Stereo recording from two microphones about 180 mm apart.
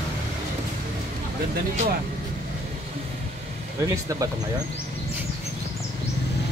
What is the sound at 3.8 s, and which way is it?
Speech, 20° right (ahead or behind).